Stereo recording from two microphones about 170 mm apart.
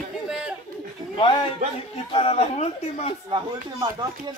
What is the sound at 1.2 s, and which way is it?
A man's voice, 25° left (ahead or behind).